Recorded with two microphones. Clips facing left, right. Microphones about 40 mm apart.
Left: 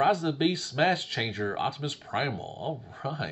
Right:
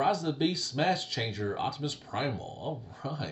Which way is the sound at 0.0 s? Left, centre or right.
Left.